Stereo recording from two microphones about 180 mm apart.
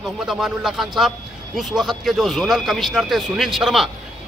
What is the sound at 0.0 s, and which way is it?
A man's voice, centre (ahead or behind).